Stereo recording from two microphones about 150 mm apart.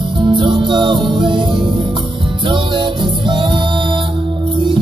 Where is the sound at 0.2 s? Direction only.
30° right (ahead or behind).